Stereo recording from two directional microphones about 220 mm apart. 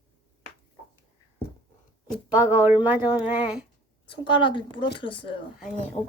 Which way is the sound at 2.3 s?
10° right (ahead or behind).